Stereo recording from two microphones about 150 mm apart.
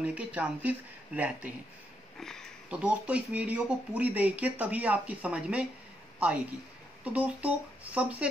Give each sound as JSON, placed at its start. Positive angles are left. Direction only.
{"t": 0.0, "sound": "speech", "side_deg": -10}
{"t": 2.1, "sound": "speech", "side_deg": 5}
{"t": 2.7, "sound": "a woman's voice", "side_deg": -10}